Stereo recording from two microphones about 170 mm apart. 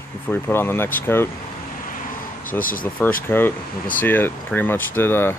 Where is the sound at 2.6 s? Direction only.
55° left (ahead or behind).